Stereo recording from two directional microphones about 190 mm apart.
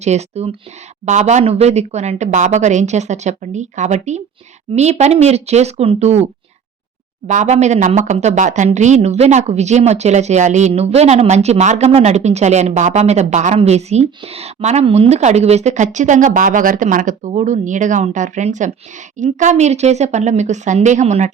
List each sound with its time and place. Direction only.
0.0 s speech: 35° right (ahead or behind)
7.3 s speech: 40° right (ahead or behind)